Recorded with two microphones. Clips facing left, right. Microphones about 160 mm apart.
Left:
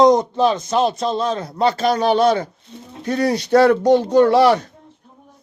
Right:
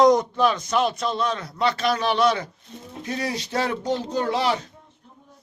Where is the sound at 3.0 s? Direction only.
60° left (ahead or behind).